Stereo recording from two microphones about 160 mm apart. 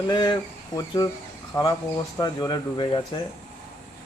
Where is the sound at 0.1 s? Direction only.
30° left (ahead or behind).